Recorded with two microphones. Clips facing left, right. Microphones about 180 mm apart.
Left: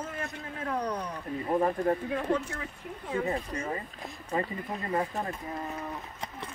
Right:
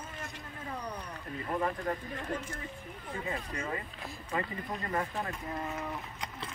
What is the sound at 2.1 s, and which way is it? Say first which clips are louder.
Speech: left 8 dB; 70° left (ahead or behind).